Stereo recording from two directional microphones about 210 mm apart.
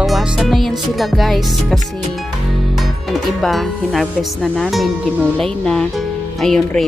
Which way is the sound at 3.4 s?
Centre (ahead or behind).